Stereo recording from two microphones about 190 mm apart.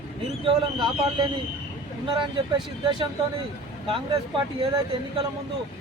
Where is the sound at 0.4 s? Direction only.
25° right (ahead or behind).